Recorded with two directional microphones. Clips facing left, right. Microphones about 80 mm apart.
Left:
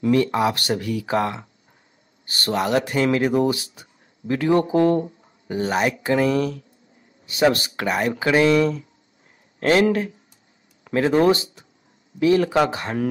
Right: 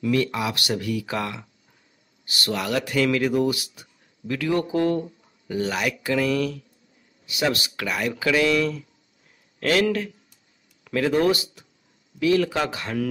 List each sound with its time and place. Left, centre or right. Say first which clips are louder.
0.0 s speech: left 5 dB; left